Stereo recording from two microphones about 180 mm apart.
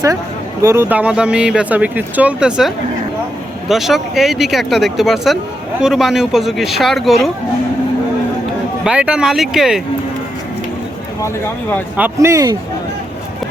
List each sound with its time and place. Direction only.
0.6 s speech: 15° right (ahead or behind)
8.8 s speech: 5° right (ahead or behind)
11.2 s speech: 15° left (ahead or behind)
11.9 s speech: 10° right (ahead or behind)